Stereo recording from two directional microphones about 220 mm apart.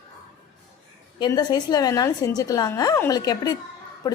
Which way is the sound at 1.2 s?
20° left (ahead or behind).